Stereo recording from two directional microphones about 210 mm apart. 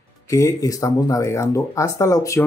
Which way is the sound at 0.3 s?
15° left (ahead or behind).